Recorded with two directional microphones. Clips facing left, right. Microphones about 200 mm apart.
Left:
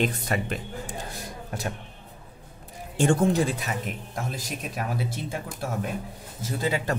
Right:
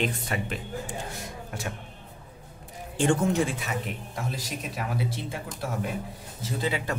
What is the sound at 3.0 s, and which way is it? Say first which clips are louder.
Speech: left 2 dB; 40° left (ahead or behind).